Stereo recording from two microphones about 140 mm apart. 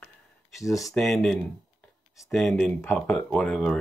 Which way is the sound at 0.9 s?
5° left (ahead or behind).